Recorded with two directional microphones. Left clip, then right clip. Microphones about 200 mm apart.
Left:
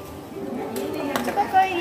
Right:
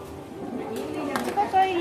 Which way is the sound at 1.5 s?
45° left (ahead or behind).